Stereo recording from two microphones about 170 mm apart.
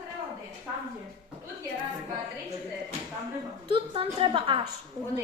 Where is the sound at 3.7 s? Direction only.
30° right (ahead or behind).